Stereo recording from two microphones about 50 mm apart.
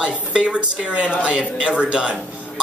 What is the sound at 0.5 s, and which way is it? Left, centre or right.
Speech, right.